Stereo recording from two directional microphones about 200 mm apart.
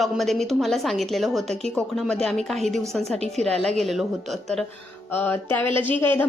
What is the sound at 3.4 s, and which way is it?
A woman's voice, 5° left (ahead or behind).